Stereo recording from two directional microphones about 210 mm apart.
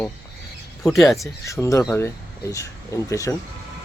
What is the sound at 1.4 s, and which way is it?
Speech, 15° left (ahead or behind).